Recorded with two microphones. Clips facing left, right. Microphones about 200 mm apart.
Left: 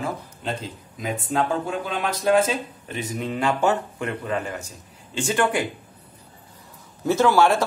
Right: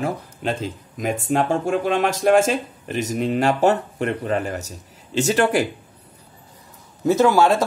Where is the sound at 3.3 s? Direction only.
40° right (ahead or behind).